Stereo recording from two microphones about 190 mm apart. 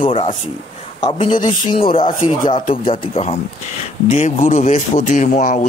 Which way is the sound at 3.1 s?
30° left (ahead or behind).